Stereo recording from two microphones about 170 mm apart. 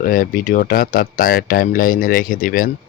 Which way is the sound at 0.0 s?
55° left (ahead or behind).